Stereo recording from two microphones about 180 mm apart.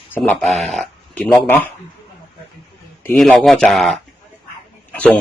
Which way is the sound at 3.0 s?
5° left (ahead or behind).